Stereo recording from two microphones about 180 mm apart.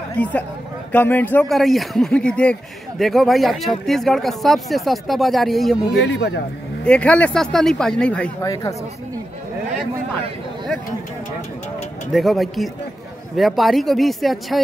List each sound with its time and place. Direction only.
0.2 s speech: 10° left (ahead or behind)
6.1 s speech: 70° left (ahead or behind)
6.8 s speech: 5° left (ahead or behind)
8.4 s speech: 20° left (ahead or behind)
12.1 s speech: centre (ahead or behind)